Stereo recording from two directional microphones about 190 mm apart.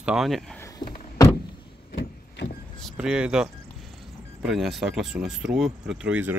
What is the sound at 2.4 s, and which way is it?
Vehicle, 65° left (ahead or behind).